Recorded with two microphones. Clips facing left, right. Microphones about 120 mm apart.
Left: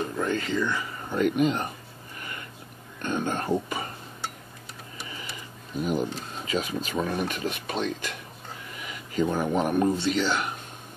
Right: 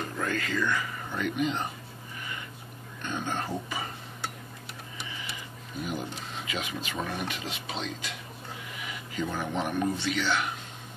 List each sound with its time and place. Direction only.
0.2 s speech: 25° left (ahead or behind)
1.1 s speech: 45° left (ahead or behind)
3.0 s speech: 50° left (ahead or behind)
5.8 s speech: 45° left (ahead or behind)
8.7 s speech: 40° left (ahead or behind)